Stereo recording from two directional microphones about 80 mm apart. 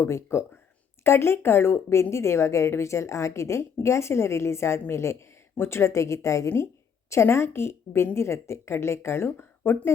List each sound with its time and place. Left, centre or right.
0.0 s a woman's voice: left